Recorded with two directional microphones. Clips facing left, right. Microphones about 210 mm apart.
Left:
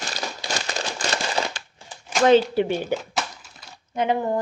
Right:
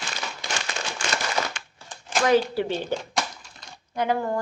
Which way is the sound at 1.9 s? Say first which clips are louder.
Even; 5° left (ahead or behind).